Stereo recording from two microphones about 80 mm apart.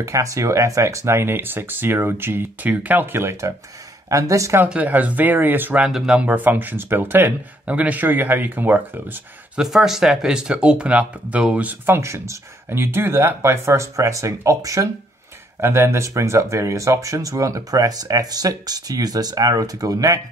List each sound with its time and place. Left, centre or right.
0.0 s speech: right
4.6 s speech: centre
5.9 s speech: centre
6.2 s speech: right
9.6 s speech: centre; by 14.9 s right
15.6 s speech: right